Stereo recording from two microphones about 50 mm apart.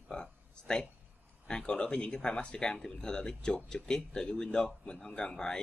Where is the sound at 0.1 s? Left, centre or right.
Centre.